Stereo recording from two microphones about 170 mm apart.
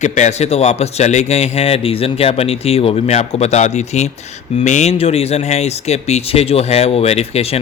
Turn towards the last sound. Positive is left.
turn(degrees=35)  # may be behind; listen again after turning